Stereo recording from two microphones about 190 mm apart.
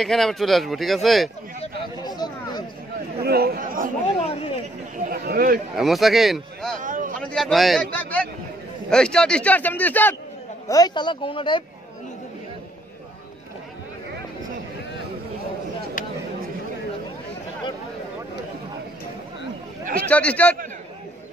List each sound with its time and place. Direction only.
0.0 s speech: centre (ahead or behind)
1.6 s speech: 20° left (ahead or behind)
3.2 s speech: 55° right (ahead or behind)
4.2 s speech: 30° left (ahead or behind)
4.9 s speech: 50° right (ahead or behind)
5.8 s speech: centre (ahead or behind)
6.8 s a sound: 45° right (ahead or behind)
7.2 s speech: centre (ahead or behind)
10.7 s speech: 20° left (ahead or behind)
20.1 s speech: 5° left (ahead or behind)